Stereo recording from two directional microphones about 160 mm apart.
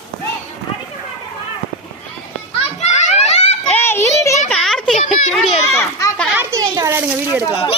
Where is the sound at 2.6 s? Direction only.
45° left (ahead or behind).